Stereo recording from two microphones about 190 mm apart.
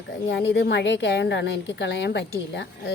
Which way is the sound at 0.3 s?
65° left (ahead or behind).